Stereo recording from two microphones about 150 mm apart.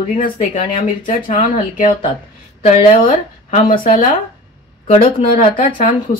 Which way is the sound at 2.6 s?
50° left (ahead or behind).